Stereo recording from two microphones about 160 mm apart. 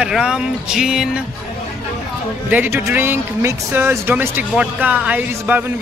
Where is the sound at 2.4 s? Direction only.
10° right (ahead or behind).